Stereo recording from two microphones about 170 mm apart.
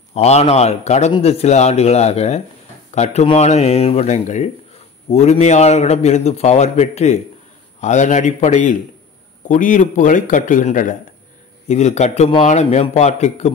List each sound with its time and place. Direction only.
0.1 s a man's voice: 40° left (ahead or behind)